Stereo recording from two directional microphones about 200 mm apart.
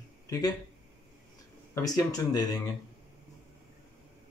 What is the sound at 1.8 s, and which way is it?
Speech, 20° left (ahead or behind).